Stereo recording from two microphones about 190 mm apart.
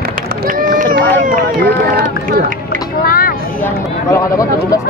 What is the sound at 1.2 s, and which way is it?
Speech, 45° right (ahead or behind).